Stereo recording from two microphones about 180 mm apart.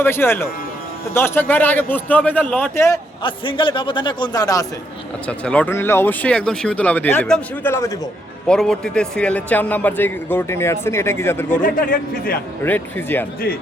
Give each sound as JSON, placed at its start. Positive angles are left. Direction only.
{"t": 0.0, "sound": "a man's voice", "side_deg": 10}
{"t": 3.2, "sound": "a man's voice", "side_deg": 25}
{"t": 5.2, "sound": "a man's voice", "side_deg": 5}
{"t": 8.4, "sound": "a man's voice", "side_deg": 5}
{"t": 11.6, "sound": "a man's voice", "side_deg": 55}
{"t": 12.6, "sound": "a man's voice", "side_deg": 10}